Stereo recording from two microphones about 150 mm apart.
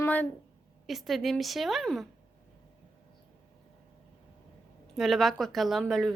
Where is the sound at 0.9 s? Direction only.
Centre (ahead or behind).